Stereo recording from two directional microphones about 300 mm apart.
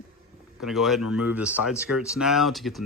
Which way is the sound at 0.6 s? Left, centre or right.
Centre.